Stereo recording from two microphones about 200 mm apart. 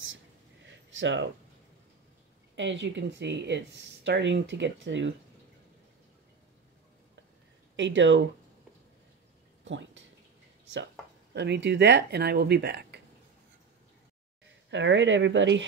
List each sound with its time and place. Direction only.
0.7 s a sound: 65° right (ahead or behind)
2.5 s speech: 65° right (ahead or behind)
7.7 s speech: 65° right (ahead or behind)
9.7 s a sound: 65° right (ahead or behind)
11.3 s speech: 60° right (ahead or behind)
14.7 s speech: 65° right (ahead or behind)